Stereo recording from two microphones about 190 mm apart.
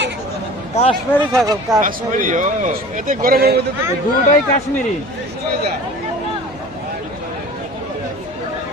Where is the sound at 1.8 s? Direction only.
45° right (ahead or behind).